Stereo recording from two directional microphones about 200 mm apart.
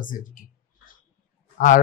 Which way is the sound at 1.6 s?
40° left (ahead or behind).